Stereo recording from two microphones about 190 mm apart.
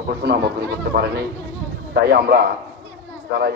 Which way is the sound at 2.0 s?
55° right (ahead or behind).